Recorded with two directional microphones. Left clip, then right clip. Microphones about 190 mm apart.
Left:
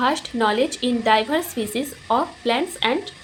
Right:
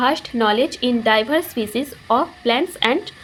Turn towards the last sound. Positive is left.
turn(degrees=-20)  # may be behind; listen again after turning